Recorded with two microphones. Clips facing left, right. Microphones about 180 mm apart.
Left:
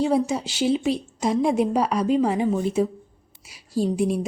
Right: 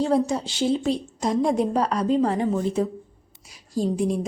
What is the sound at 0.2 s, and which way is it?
A woman's voice, 5° left (ahead or behind).